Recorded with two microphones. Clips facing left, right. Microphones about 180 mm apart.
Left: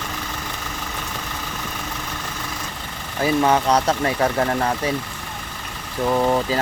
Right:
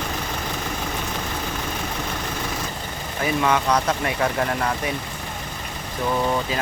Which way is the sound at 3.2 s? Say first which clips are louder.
Left 4 dB; 30° left (ahead or behind).